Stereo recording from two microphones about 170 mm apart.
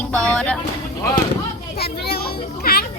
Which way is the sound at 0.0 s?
5° left (ahead or behind).